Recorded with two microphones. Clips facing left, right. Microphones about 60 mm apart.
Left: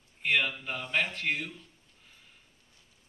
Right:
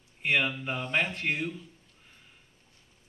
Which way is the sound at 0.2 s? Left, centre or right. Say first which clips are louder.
Right 1 dB; centre.